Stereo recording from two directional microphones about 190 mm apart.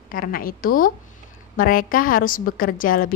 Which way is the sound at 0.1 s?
50° left (ahead or behind).